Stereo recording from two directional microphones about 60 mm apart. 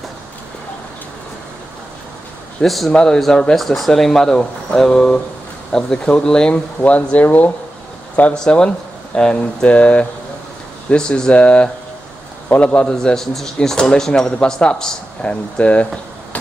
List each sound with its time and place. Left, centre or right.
2.6 s speech: centre
2.9 s speech: centre; by 7.5 s left
8.2 s a man's voice: centre
12.8 s speech: centre